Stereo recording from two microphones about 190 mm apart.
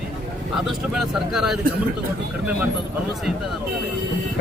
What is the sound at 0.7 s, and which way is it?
Speech, centre (ahead or behind).